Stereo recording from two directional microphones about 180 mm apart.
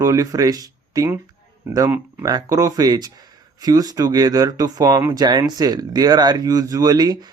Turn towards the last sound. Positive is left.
turn(degrees=-20)  # may be behind; listen again after turning